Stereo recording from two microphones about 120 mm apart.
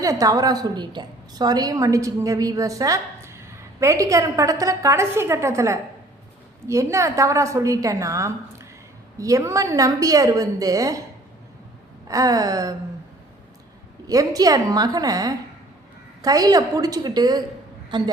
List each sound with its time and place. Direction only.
0.0 s a woman's voice: 30° right (ahead or behind)
12.0 s a woman's voice: 30° right (ahead or behind)
14.1 s a woman's voice: 30° right (ahead or behind)